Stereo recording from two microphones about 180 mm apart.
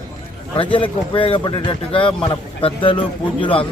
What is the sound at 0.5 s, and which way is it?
Speech, 30° left (ahead or behind).